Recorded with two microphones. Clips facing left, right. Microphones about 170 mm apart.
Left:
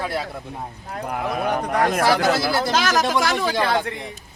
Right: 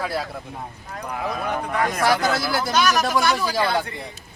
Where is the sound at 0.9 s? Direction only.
45° left (ahead or behind).